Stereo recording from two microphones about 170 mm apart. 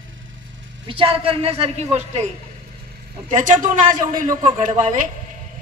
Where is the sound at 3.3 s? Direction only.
50° right (ahead or behind).